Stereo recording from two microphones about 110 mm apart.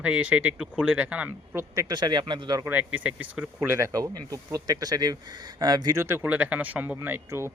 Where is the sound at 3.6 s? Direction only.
25° right (ahead or behind).